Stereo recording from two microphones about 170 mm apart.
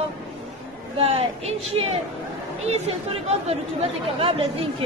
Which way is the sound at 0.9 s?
35° right (ahead or behind).